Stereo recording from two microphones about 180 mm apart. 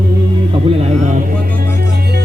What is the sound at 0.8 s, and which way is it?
Speech, 40° right (ahead or behind).